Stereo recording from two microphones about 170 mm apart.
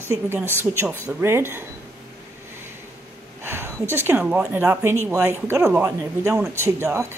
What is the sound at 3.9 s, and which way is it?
Speech, 15° right (ahead or behind).